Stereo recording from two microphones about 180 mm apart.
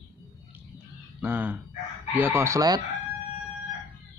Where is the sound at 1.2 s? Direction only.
10° right (ahead or behind).